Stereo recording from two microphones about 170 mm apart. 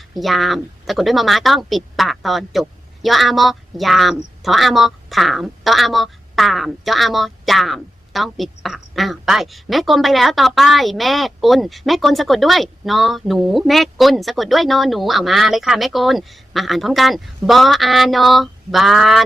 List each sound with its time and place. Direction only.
0.1 s a woman's voice: centre (ahead or behind)